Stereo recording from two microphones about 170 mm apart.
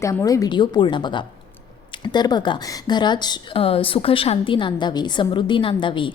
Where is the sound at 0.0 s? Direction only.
20° left (ahead or behind).